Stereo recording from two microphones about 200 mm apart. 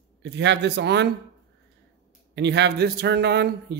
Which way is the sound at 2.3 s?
60° right (ahead or behind).